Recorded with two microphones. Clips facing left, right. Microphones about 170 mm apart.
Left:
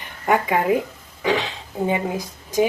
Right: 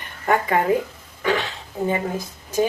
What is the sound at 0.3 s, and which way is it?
Speech, 10° left (ahead or behind).